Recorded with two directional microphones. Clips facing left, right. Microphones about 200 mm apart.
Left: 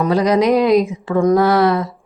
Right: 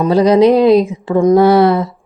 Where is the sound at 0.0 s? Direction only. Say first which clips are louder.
Right 5 dB; 30° right (ahead or behind).